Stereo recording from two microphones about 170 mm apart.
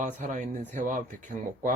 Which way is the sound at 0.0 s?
45° right (ahead or behind).